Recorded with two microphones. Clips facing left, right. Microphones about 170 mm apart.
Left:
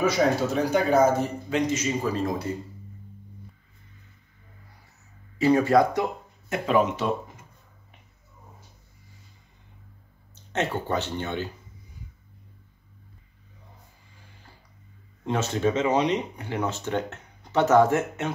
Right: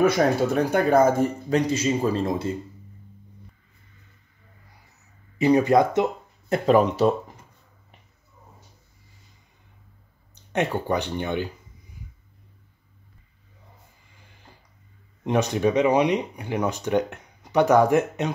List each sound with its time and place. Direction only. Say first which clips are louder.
0.0 s speech: right 3 dB; 55° right (ahead or behind)
1.7 s speech: right 4 dB; 30° right (ahead or behind)
5.4 s speech: right 1 dB; 20° right (ahead or behind)
6.5 s speech: right 4 dB; 40° right (ahead or behind)
10.3 s speech: right 3 dB; 15° right (ahead or behind)
15.2 s speech: right 3 dB; 15° right (ahead or behind)